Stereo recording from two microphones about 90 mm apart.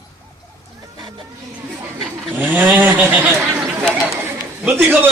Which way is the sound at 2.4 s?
20° right (ahead or behind).